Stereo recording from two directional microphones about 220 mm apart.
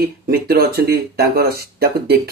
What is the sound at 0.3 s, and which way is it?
Speech, 45° right (ahead or behind).